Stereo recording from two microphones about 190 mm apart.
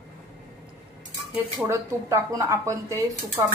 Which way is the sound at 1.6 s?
15° right (ahead or behind).